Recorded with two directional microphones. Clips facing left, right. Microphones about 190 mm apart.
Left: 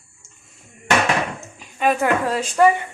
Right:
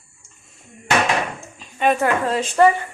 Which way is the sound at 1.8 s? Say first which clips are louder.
Even; 5° left (ahead or behind).